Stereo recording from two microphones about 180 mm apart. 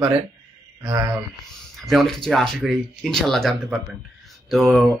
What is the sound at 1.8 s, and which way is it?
Speech, centre (ahead or behind).